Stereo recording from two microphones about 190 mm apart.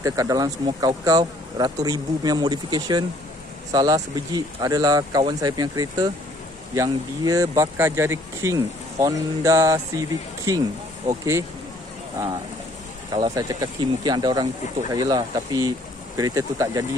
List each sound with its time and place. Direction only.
0.0 s speech: 20° right (ahead or behind)
13.1 s speech: 20° right (ahead or behind)